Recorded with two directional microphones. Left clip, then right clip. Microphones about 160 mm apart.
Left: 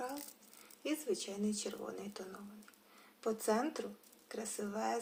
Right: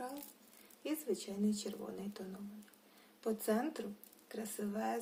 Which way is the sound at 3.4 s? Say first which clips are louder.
Left 3 dB; 15° right (ahead or behind).